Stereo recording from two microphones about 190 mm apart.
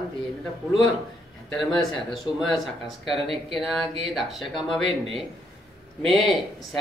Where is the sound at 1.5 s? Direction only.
Centre (ahead or behind).